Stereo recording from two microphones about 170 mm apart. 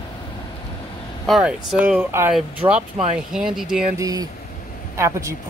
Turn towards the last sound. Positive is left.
turn(degrees=-15)  # may be behind; listen again after turning